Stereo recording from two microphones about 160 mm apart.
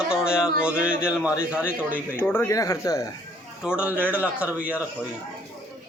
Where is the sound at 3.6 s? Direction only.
5° right (ahead or behind).